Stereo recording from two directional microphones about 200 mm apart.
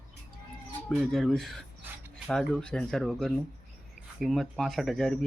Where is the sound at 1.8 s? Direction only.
10° right (ahead or behind).